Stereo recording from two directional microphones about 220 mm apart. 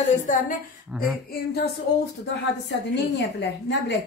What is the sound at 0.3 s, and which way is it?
Speech, 35° left (ahead or behind).